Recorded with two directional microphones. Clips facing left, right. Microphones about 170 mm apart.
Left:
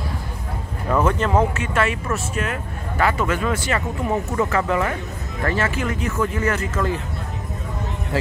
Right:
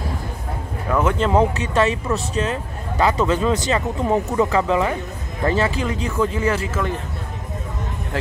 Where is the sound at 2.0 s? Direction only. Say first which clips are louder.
Right 3 dB; 20° right (ahead or behind).